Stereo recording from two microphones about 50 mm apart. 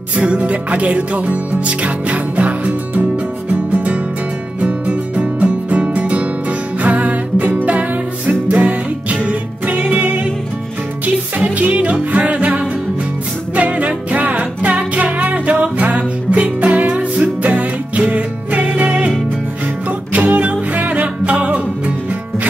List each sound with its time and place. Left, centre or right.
0.1 s music: right
4.6 s music: right
11.3 s music: right